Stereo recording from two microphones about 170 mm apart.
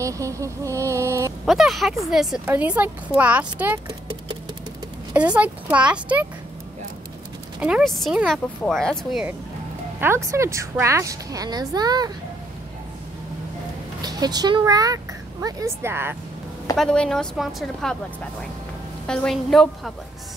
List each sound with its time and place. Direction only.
0.0 s a sound: 20° right (ahead or behind)
1.4 s a woman's voice: centre (ahead or behind)
5.1 s a woman's voice: 10° right (ahead or behind)
7.6 s speech: centre (ahead or behind)
9.9 s a woman's voice: 15° right (ahead or behind)
14.0 s a woman's voice: 25° right (ahead or behind)
16.7 s speech: 5° left (ahead or behind)
19.0 s speech: 5° left (ahead or behind)